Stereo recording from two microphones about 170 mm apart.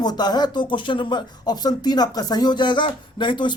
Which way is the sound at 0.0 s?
25° left (ahead or behind).